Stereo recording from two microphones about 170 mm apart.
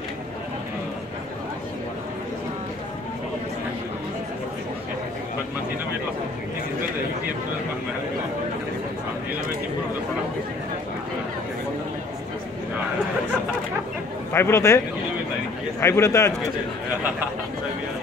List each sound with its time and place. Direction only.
14.3 s a man's voice: 15° left (ahead or behind)
15.8 s a man's voice: 15° left (ahead or behind)